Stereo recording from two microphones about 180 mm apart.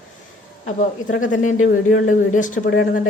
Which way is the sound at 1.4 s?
45° left (ahead or behind).